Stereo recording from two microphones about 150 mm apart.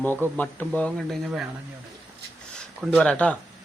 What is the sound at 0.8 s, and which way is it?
Speech, 5° left (ahead or behind).